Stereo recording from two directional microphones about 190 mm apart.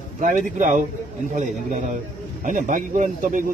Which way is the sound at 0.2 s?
40° right (ahead or behind).